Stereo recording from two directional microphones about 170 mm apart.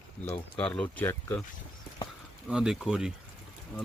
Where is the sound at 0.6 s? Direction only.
5° left (ahead or behind).